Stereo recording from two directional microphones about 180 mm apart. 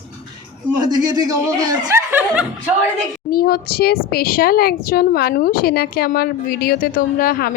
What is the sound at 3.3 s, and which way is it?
A woman's voice, 60° left (ahead or behind).